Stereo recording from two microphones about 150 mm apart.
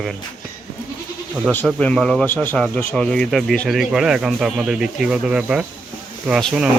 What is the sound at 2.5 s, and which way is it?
Speech, centre (ahead or behind).